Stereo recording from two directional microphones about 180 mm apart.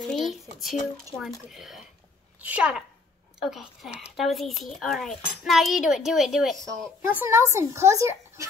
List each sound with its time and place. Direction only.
0.0 s a child's voice: centre (ahead or behind)
7.2 s speech: 15° right (ahead or behind)